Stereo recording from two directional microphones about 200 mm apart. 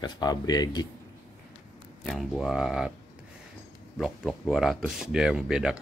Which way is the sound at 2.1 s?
Centre (ahead or behind).